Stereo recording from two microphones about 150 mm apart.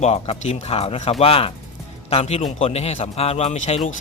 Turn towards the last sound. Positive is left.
turn(degrees=45)  # may be behind; listen again after turning